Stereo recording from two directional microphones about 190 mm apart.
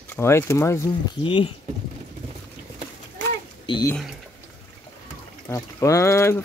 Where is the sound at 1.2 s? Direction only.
25° left (ahead or behind).